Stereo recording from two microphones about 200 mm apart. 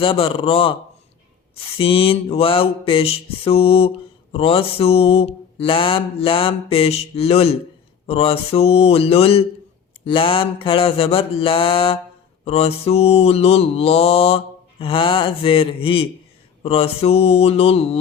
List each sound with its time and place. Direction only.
0.0 s mantra: 30° left (ahead or behind)
16.6 s speech: 30° left (ahead or behind)